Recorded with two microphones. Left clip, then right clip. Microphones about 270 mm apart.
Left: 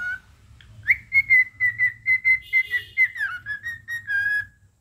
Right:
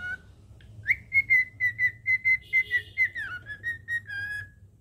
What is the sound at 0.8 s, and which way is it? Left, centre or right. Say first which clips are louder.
Whistling: left 5 dB; centre.